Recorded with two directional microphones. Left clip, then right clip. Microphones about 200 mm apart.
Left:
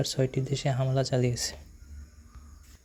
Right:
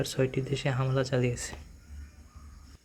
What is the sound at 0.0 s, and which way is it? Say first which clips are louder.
Speech: even; 20° left (ahead or behind).